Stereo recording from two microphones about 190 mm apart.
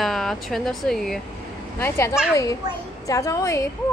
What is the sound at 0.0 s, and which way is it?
Speech, centre (ahead or behind).